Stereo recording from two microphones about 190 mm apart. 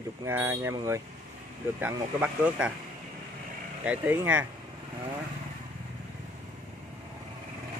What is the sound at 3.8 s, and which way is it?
Speech, 10° right (ahead or behind).